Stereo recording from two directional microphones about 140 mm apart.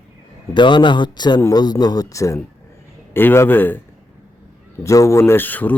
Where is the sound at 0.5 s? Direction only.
35° left (ahead or behind); by 3.8 s 15° left (ahead or behind).